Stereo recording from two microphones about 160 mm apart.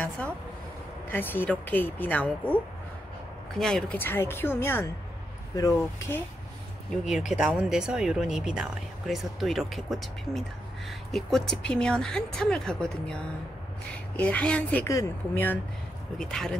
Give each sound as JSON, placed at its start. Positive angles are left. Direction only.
{"t": 1.1, "sound": "speech", "side_deg": 10}
{"t": 7.3, "sound": "speech", "side_deg": -5}